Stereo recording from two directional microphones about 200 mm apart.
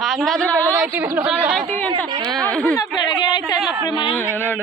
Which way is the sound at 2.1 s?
25° right (ahead or behind).